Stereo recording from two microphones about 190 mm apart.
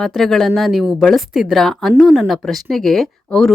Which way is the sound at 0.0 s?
Centre (ahead or behind).